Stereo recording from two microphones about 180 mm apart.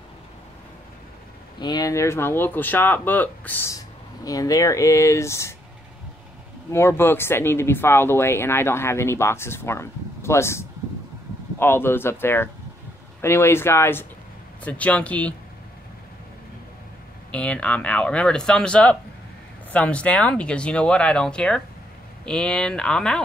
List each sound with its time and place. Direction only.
1.6 s speech: 20° left (ahead or behind)
6.7 s speech: 15° left (ahead or behind)
17.3 s speech: 5° left (ahead or behind)